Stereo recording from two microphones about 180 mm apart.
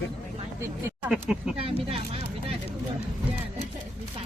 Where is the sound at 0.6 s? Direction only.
15° right (ahead or behind).